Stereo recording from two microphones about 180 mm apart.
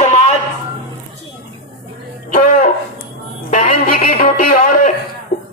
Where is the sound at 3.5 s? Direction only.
45° left (ahead or behind).